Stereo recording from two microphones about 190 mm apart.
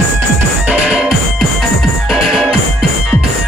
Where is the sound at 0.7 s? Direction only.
5° right (ahead or behind).